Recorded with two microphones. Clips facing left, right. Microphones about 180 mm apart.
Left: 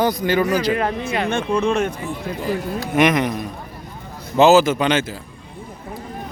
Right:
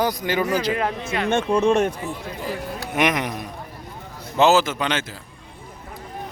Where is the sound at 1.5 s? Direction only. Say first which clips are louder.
Right 2 dB; 40° right (ahead or behind).